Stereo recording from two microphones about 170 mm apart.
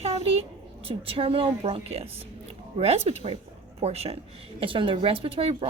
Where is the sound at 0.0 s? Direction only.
35° right (ahead or behind).